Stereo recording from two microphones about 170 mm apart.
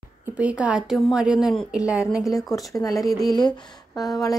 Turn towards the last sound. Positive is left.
turn(degrees=25)  # may be behind; listen again after turning